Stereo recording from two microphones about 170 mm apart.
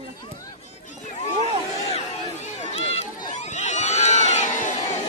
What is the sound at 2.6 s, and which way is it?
Crowd, 40° left (ahead or behind).